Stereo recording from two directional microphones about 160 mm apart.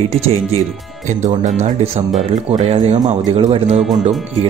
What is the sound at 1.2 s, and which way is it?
Speech, 45° right (ahead or behind).